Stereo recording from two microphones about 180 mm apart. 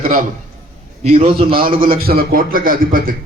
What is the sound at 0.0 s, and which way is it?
Speech, 50° right (ahead or behind).